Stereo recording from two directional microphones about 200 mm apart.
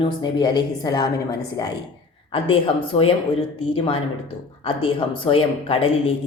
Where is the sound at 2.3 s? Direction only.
30° left (ahead or behind).